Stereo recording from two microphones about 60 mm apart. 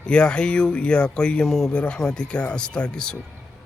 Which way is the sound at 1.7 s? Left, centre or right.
Centre.